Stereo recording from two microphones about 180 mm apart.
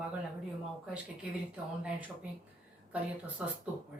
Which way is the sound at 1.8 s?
10° right (ahead or behind).